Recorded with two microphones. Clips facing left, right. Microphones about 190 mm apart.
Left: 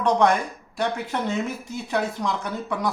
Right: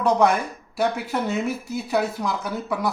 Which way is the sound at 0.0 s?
5° right (ahead or behind).